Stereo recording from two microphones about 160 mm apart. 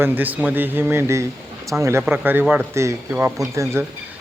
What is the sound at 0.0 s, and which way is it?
Speech, 10° right (ahead or behind).